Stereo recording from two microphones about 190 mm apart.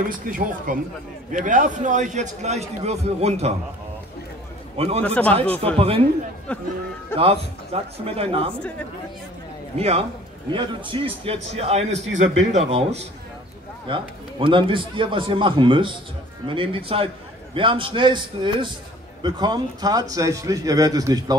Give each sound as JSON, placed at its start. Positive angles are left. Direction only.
{"t": 0.1, "sound": "a man's voice", "side_deg": -45}
{"t": 4.7, "sound": "a man's voice", "side_deg": -30}
{"t": 5.0, "sound": "speech", "side_deg": 5}
{"t": 5.8, "sound": "a man's voice", "side_deg": -30}
{"t": 6.5, "sound": "speech", "side_deg": 5}
{"t": 7.2, "sound": "a man's voice", "side_deg": -30}
{"t": 9.8, "sound": "a man's voice", "side_deg": -30}
{"t": 12.1, "sound": "a man's voice", "side_deg": -80}
{"t": 12.5, "sound": "a man's voice", "side_deg": -35}